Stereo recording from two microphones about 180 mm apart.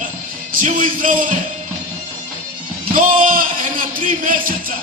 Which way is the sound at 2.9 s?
50° right (ahead or behind).